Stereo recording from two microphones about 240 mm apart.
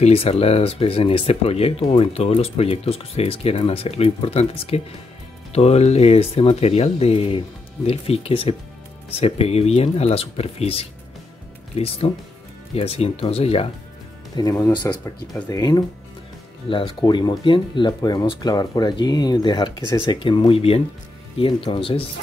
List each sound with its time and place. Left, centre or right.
0.0 s speech: left